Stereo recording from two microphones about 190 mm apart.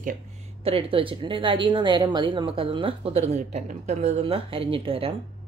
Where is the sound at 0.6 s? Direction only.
30° right (ahead or behind).